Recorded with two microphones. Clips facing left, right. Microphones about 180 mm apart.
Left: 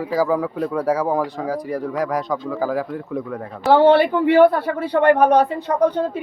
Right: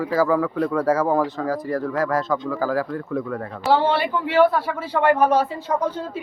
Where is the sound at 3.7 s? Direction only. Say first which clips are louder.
Left 8 dB; 55° left (ahead or behind).